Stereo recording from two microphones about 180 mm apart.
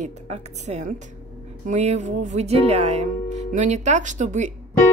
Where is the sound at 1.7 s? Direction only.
40° right (ahead or behind).